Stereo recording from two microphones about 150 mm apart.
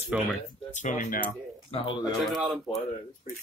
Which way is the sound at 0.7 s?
55° left (ahead or behind).